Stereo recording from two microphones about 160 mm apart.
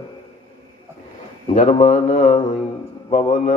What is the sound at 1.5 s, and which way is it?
A man's voice, 50° left (ahead or behind).